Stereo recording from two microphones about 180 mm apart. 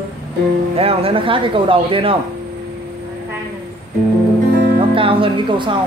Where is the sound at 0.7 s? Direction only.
30° right (ahead or behind).